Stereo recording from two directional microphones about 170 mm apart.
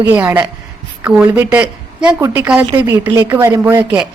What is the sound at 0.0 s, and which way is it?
A woman's voice, 15° right (ahead or behind).